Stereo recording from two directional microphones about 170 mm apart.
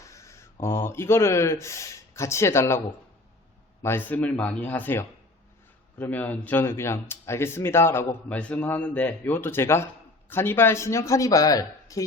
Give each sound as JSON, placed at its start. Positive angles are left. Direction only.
{"t": 0.0, "sound": "a sound", "side_deg": 20}
{"t": 0.6, "sound": "speech", "side_deg": 15}
{"t": 3.8, "sound": "speech", "side_deg": 10}